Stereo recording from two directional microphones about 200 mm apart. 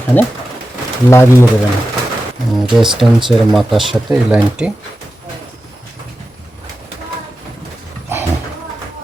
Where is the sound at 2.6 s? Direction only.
Centre (ahead or behind).